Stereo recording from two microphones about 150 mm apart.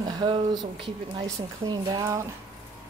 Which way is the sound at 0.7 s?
35° right (ahead or behind).